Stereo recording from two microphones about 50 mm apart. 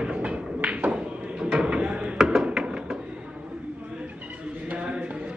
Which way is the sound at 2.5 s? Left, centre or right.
Centre.